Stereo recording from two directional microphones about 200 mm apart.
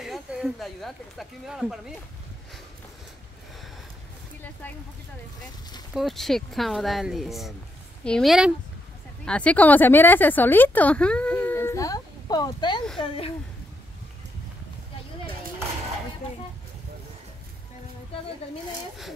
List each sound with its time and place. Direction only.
0.0 s speech: centre (ahead or behind)
5.9 s speech: centre (ahead or behind); by 13.3 s 25° left (ahead or behind)